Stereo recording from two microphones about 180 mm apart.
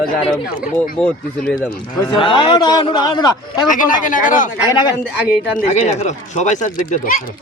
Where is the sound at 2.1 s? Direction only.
25° left (ahead or behind).